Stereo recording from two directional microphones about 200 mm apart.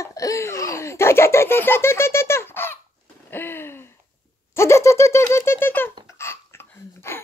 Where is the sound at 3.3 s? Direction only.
10° left (ahead or behind).